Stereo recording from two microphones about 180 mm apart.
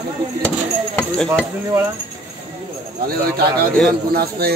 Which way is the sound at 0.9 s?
5° left (ahead or behind).